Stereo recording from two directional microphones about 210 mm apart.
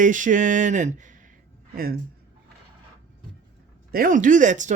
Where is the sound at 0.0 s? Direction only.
40° right (ahead or behind).